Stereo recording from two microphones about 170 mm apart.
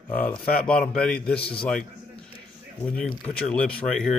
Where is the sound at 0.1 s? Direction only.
5° left (ahead or behind).